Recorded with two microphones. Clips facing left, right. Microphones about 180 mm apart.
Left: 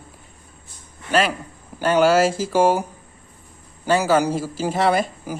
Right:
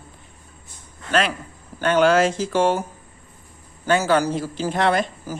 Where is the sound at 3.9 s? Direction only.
5° left (ahead or behind).